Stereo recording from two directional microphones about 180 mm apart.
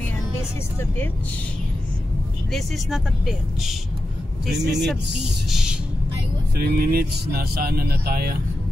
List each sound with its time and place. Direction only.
0.7 s speech: 10° left (ahead or behind)
2.5 s speech: centre (ahead or behind)
5.5 s vehicle: 5° right (ahead or behind)
6.6 s speech: 60° right (ahead or behind)